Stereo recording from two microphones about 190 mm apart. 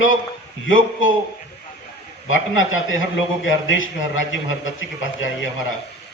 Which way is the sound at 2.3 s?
90° left.